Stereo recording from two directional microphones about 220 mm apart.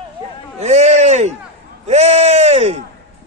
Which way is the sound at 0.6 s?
30° right (ahead or behind).